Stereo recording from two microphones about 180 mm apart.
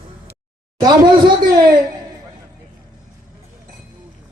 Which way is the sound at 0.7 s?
25° right (ahead or behind).